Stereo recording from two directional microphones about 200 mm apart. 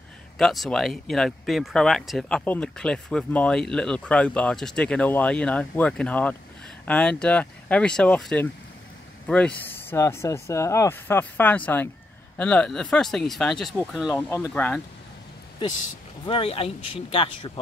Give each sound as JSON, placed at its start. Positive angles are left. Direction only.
{"t": 0.4, "sound": "speech", "side_deg": 0}
{"t": 14.5, "sound": "speech", "side_deg": 10}
{"t": 16.3, "sound": "speech", "side_deg": 25}